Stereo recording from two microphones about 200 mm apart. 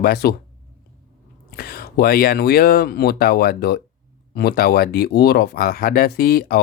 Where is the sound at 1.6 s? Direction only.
50° left (ahead or behind).